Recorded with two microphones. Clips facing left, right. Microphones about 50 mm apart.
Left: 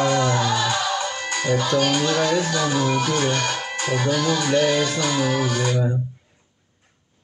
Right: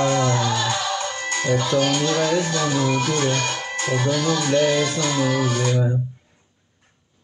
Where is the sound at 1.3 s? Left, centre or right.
Right.